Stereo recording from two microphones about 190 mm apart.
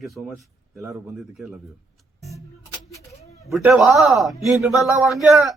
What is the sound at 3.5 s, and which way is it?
Speech, 10° right (ahead or behind).